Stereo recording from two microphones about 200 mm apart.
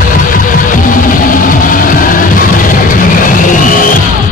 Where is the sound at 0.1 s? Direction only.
45° left (ahead or behind).